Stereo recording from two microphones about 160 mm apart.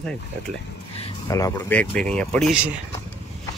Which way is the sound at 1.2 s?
20° left (ahead or behind).